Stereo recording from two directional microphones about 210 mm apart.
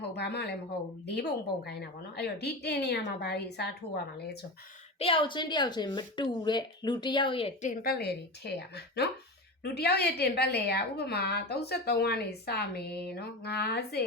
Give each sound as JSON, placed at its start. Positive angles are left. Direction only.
{"t": 0.1, "sound": "a woman's voice", "side_deg": 50}
{"t": 4.9, "sound": "speech", "side_deg": 25}
{"t": 7.7, "sound": "a woman's voice", "side_deg": 45}